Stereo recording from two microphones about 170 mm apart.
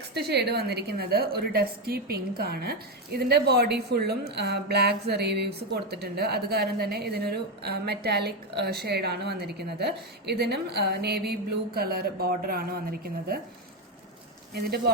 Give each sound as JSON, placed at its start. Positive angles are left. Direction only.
{"t": 0.1, "sound": "a woman's voice", "side_deg": -75}
{"t": 14.5, "sound": "speech", "side_deg": -65}